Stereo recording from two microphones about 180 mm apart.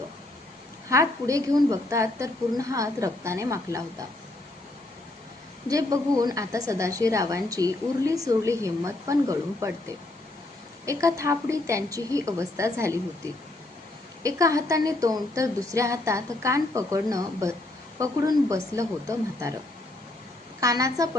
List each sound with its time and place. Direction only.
0.9 s a woman's voice: 15° right (ahead or behind)
5.6 s a woman's voice: 20° right (ahead or behind)
10.8 s a woman's voice: 15° right (ahead or behind)
14.2 s a woman's voice: 20° right (ahead or behind)
20.6 s a woman's voice: 20° right (ahead or behind)